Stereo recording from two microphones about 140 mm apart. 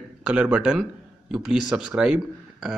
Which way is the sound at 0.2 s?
10° right (ahead or behind).